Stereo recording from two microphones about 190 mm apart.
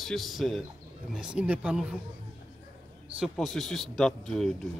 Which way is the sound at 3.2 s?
Centre (ahead or behind).